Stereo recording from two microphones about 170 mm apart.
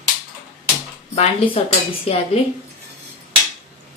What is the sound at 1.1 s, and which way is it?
Speech, 35° left (ahead or behind).